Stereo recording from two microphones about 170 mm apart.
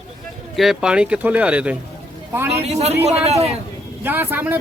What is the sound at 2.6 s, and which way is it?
Speech, 40° right (ahead or behind).